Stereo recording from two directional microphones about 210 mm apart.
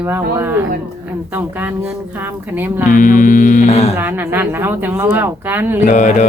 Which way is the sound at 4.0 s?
10° right (ahead or behind).